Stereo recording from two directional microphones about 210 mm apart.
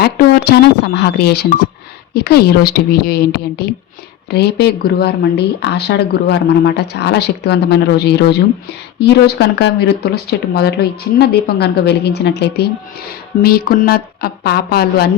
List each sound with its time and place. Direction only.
0.0 s speech: 50° left (ahead or behind)